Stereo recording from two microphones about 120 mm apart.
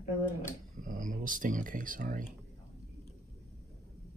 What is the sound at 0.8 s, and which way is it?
Speech, 90° right.